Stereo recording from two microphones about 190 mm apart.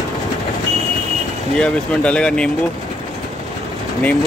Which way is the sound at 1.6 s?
5° left (ahead or behind).